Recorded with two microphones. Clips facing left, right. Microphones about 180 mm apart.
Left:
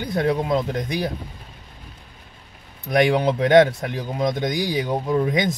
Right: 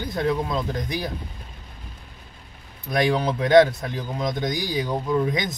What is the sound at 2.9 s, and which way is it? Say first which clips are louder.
Speech: left 4 dB; 20° left (ahead or behind).